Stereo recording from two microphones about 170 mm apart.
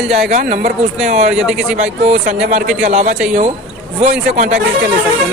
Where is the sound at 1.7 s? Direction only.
45° right (ahead or behind).